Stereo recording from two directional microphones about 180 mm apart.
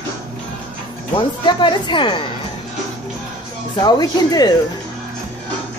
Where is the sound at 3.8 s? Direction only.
25° left (ahead or behind).